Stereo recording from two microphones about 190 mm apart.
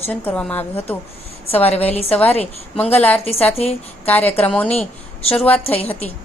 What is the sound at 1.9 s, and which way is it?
Speech, 30° left (ahead or behind).